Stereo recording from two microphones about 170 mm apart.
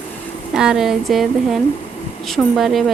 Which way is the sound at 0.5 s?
5° right (ahead or behind).